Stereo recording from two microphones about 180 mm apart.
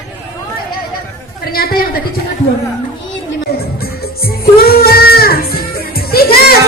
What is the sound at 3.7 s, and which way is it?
Music, 60° left (ahead or behind).